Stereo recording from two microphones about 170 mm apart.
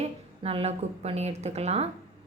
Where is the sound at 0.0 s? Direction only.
35° right (ahead or behind).